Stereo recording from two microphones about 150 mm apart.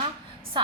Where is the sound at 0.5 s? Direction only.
30° right (ahead or behind).